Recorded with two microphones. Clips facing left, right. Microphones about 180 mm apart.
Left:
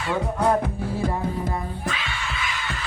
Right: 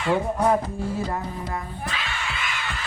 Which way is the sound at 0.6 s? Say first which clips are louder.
Left 2 dB; 60° left (ahead or behind).